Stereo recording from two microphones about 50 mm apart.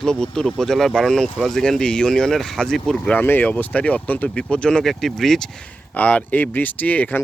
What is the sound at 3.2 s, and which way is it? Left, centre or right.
Speech, left.